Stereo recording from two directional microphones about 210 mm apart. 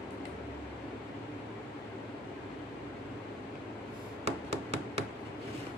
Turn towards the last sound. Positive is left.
turn(degrees=-30)  # may be behind; listen again after turning